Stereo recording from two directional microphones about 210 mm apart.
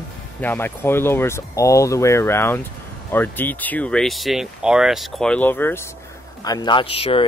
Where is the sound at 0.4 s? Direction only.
10° left (ahead or behind).